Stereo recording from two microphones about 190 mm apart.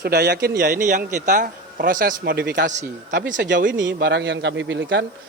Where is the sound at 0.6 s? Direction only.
45° right (ahead or behind); by 5.0 s 75° right (ahead or behind).